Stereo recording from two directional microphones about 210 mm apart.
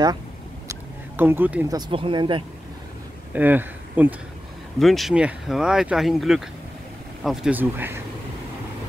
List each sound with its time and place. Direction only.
0.7 s a sound: 10° right (ahead or behind)
1.8 s speech: 25° right (ahead or behind)
3.3 s speech: 10° right (ahead or behind)